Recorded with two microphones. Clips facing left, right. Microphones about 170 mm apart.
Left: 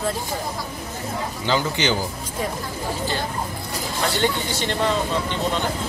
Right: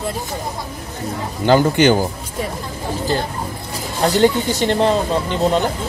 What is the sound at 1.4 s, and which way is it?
Speech, 50° right (ahead or behind).